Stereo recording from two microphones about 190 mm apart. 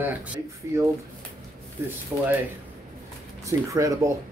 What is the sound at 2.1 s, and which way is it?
Speech, 10° right (ahead or behind).